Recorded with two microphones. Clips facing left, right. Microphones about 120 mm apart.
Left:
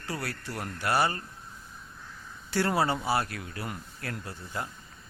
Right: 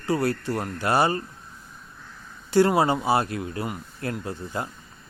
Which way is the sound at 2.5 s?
20° right (ahead or behind).